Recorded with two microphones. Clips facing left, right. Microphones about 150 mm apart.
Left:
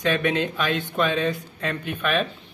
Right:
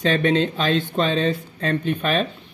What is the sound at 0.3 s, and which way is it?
Speech, 30° right (ahead or behind).